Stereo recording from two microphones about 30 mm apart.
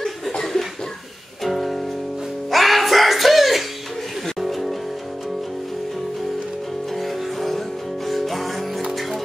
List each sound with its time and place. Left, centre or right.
0.3 s chuckle: centre
1.4 s music: centre
7.0 s music: centre